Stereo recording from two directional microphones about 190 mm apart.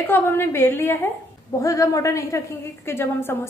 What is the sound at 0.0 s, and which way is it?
A woman's voice, 10° left (ahead or behind).